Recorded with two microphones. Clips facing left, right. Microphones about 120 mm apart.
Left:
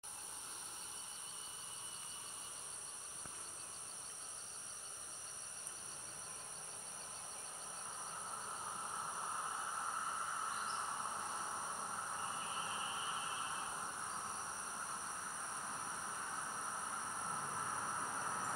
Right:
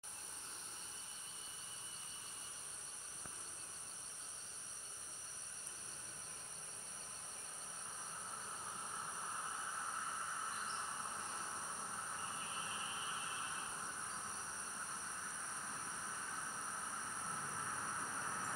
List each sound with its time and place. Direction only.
8.3 s insect: 30° left (ahead or behind)
15.6 s vehicle: 30° left (ahead or behind)